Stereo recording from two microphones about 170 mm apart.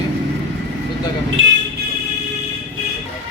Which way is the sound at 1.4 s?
90° right.